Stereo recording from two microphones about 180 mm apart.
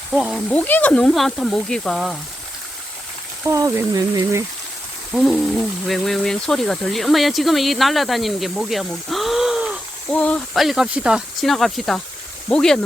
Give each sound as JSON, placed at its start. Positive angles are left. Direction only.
{"t": 0.1, "sound": "speech", "side_deg": 0}
{"t": 3.4, "sound": "speech", "side_deg": -15}
{"t": 5.1, "sound": "speech", "side_deg": 0}
{"t": 10.1, "sound": "speech", "side_deg": 5}